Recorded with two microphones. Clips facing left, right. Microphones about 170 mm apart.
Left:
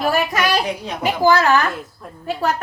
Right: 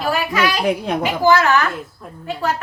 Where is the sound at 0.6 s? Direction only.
55° right (ahead or behind).